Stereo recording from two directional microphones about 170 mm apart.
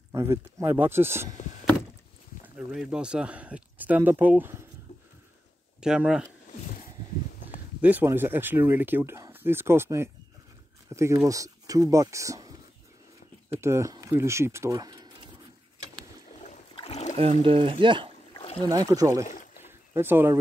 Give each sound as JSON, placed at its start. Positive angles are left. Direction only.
{"t": 0.1, "sound": "speech", "side_deg": -15}
{"t": 2.4, "sound": "speech", "side_deg": -5}
{"t": 5.8, "sound": "speech", "side_deg": -5}
{"t": 7.8, "sound": "speech", "side_deg": -10}
{"t": 13.6, "sound": "speech", "side_deg": -15}
{"t": 16.7, "sound": "a sound", "side_deg": 40}
{"t": 17.2, "sound": "speech", "side_deg": -35}
{"t": 18.3, "sound": "boat", "side_deg": 30}
{"t": 18.7, "sound": "speech", "side_deg": -20}
{"t": 19.6, "sound": "a sound", "side_deg": -15}